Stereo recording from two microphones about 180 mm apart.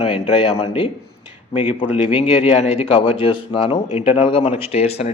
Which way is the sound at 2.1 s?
30° left (ahead or behind).